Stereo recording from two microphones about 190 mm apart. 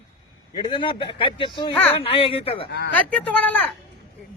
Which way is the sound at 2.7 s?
65° left (ahead or behind).